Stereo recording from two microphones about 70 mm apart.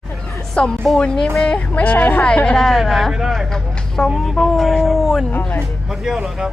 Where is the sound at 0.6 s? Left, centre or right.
Centre.